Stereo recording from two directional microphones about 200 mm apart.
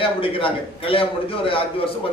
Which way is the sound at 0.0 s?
25° left (ahead or behind).